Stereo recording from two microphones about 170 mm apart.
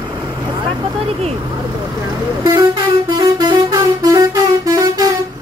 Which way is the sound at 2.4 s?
25° right (ahead or behind).